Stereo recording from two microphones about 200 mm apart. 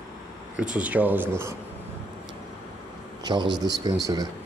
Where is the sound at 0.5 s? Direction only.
5° right (ahead or behind).